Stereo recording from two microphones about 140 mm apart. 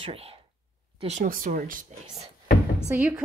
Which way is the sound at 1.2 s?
90° right.